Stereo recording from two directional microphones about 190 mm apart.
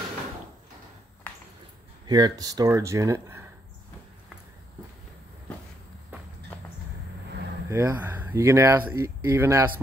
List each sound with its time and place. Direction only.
2.0 s speech: 20° right (ahead or behind)
7.7 s speech: 15° right (ahead or behind)